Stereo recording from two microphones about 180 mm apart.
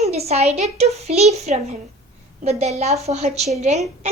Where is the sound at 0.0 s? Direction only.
35° right (ahead or behind).